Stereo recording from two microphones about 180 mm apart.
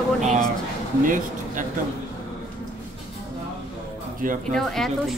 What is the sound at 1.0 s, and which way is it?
Speech, 45° right (ahead or behind).